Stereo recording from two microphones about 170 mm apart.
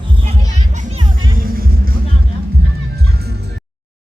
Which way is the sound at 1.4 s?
55° right (ahead or behind).